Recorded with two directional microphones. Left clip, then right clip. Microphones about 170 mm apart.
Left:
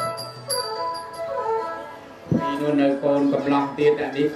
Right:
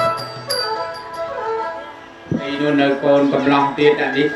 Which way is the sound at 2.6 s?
35° right (ahead or behind).